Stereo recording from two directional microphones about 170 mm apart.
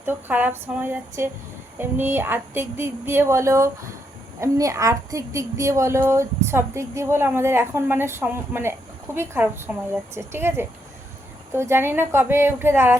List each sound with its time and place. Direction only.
0.0 s a woman's voice: 10° right (ahead or behind)